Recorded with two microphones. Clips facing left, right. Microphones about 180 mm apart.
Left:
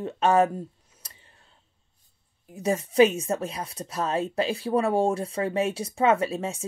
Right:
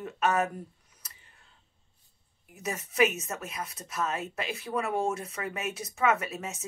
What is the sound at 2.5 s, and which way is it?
A woman's voice, 30° left (ahead or behind).